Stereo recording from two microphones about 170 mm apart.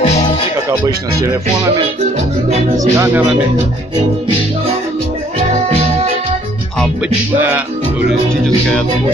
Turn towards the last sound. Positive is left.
turn(degrees=-10)  # may be behind; listen again after turning